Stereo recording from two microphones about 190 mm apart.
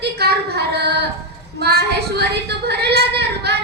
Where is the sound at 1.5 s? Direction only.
60° right (ahead or behind).